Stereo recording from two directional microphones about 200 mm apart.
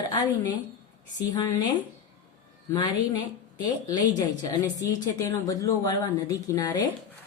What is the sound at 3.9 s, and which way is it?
A woman's voice, 20° left (ahead or behind).